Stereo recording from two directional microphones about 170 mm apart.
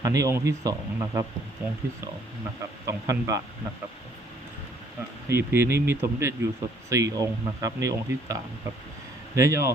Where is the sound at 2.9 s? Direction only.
20° right (ahead or behind).